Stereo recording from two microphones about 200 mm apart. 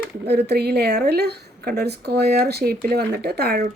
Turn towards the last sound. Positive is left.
turn(degrees=-50)  # may be behind; listen again after turning